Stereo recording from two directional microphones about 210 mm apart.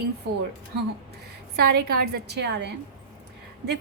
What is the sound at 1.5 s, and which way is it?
Speech, 50° right (ahead or behind).